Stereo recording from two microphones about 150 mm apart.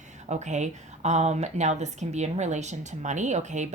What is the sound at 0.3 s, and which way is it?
Speech, 50° right (ahead or behind).